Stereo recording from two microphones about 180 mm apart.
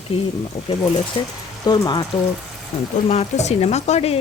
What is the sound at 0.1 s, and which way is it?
Speech, 35° left (ahead or behind).